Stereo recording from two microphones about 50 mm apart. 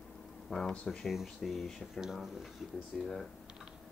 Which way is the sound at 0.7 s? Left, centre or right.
Centre.